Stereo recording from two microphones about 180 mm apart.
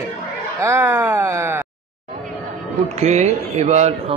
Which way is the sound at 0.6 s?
10° right (ahead or behind).